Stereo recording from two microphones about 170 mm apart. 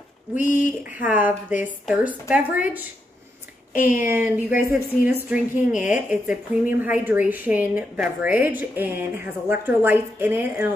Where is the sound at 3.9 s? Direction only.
10° right (ahead or behind).